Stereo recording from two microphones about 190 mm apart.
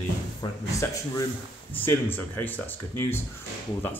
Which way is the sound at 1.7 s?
10° left (ahead or behind).